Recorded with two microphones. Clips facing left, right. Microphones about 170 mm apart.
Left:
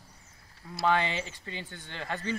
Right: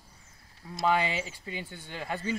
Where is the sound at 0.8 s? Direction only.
10° right (ahead or behind).